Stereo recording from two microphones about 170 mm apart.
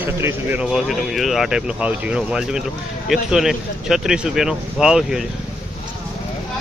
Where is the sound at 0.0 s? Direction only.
15° right (ahead or behind).